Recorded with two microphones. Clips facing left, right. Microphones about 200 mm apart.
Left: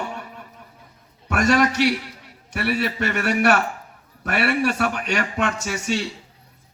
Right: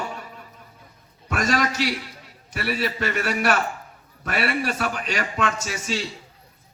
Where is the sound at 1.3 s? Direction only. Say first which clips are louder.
Left 5 dB; 65° left (ahead or behind).